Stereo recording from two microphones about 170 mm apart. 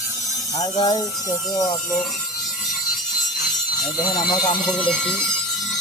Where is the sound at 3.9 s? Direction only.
25° left (ahead or behind).